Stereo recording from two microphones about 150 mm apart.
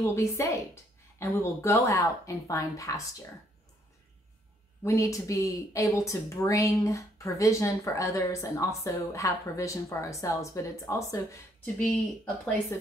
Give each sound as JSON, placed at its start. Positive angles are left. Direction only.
{"t": 0.0, "sound": "speech", "side_deg": 20}
{"t": 4.8, "sound": "speech", "side_deg": 20}
{"t": 11.6, "sound": "speech", "side_deg": 0}